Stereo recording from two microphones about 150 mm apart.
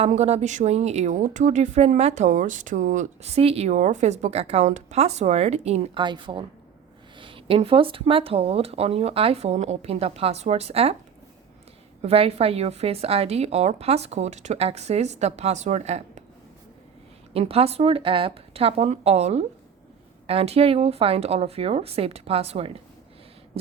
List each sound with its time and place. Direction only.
0.1 s speech: 50° right (ahead or behind)
6.0 s speech: 30° right (ahead or behind)
12.0 s speech: 40° right (ahead or behind)
17.3 s speech: 40° right (ahead or behind)